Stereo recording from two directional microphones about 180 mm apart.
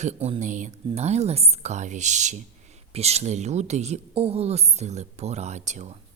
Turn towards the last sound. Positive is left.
turn(degrees=-40)  # may be behind; listen again after turning